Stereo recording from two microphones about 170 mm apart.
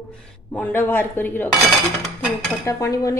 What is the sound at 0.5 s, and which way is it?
Dishes, 10° left (ahead or behind).